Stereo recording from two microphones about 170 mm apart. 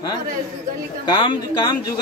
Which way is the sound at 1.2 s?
30° left (ahead or behind).